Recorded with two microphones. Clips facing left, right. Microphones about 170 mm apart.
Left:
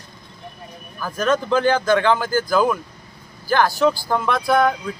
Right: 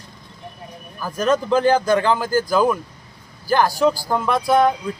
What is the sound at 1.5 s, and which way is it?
Speech, 35° right (ahead or behind).